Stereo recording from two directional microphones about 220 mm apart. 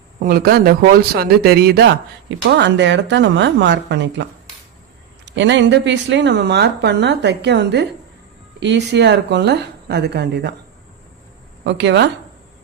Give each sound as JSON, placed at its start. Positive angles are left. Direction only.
{"t": 0.2, "sound": "a woman's voice", "side_deg": -45}
{"t": 5.3, "sound": "a woman's voice", "side_deg": -55}
{"t": 11.6, "sound": "a woman's voice", "side_deg": -55}